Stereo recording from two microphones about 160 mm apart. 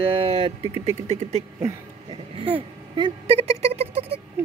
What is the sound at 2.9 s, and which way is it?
Speech, 35° right (ahead or behind).